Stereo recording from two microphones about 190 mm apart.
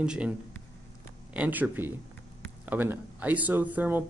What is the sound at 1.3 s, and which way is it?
Speech, 10° right (ahead or behind).